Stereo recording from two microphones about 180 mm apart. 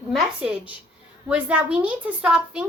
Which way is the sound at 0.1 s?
5° right (ahead or behind).